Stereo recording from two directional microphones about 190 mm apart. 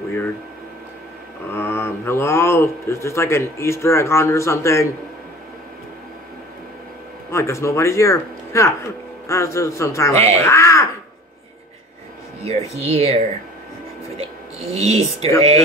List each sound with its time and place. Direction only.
1.5 s speech: 15° left (ahead or behind)
7.2 s speech: 15° left (ahead or behind)
12.4 s speech: 30° right (ahead or behind)